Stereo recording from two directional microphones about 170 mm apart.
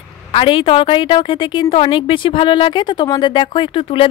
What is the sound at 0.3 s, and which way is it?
A woman's voice, 30° left (ahead or behind).